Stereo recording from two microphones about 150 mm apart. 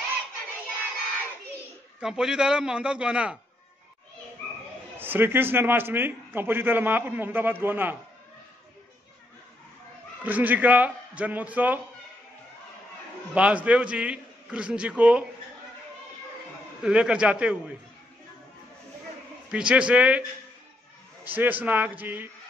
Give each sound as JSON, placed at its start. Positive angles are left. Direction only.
{"t": 2.0, "sound": "a man's voice", "side_deg": -5}
{"t": 4.9, "sound": "a man's voice", "side_deg": -15}
{"t": 10.2, "sound": "a man's voice", "side_deg": -10}
{"t": 13.3, "sound": "a man's voice", "side_deg": -10}
{"t": 16.8, "sound": "a man's voice", "side_deg": -5}
{"t": 19.5, "sound": "a man's voice", "side_deg": -5}